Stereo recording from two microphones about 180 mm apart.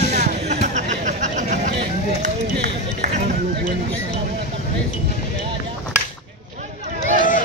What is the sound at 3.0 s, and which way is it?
Run, 40° right (ahead or behind).